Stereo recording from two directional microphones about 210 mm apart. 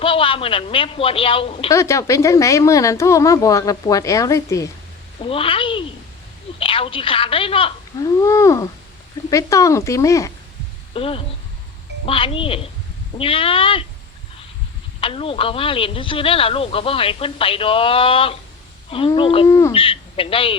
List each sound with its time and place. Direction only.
0.0 s speech: 25° left (ahead or behind)
1.7 s a woman's voice: 15° left (ahead or behind)
5.2 s speech: 25° left (ahead or behind)
8.2 s a woman's voice: 15° left (ahead or behind)
10.9 s speech: 25° left (ahead or behind)
15.0 s speech: 25° left (ahead or behind)
19.5 s a woman's voice: 15° left (ahead or behind)
19.7 s speech: 25° left (ahead or behind)